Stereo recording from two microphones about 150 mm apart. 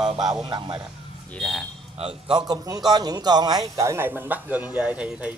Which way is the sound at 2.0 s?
35° right (ahead or behind).